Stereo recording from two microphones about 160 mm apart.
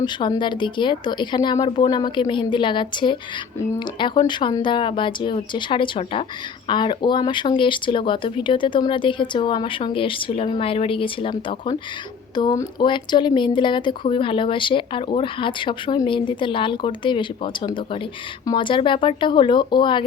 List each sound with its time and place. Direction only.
0.0 s speech: 30° left (ahead or behind)